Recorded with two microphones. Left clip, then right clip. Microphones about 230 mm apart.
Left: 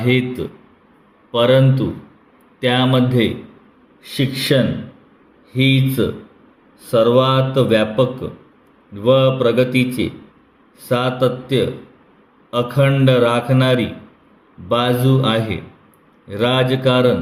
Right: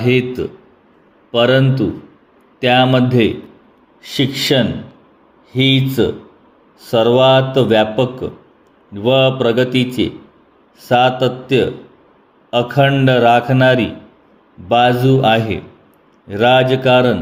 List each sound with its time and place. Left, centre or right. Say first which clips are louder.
0.0 s a man's voice: right 3 dB; centre